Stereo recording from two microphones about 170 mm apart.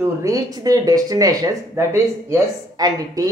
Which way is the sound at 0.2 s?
20° right (ahead or behind).